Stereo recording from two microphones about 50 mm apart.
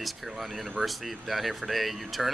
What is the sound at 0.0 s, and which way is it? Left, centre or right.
Speech, centre.